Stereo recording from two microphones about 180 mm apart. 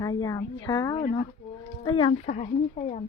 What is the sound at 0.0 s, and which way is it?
A woman's voice, 20° left (ahead or behind).